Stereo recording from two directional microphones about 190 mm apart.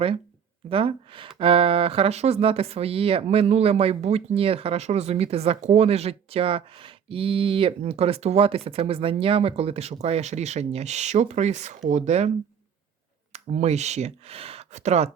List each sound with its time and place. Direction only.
0.7 s speech: 30° right (ahead or behind)
13.3 s speech: 35° right (ahead or behind)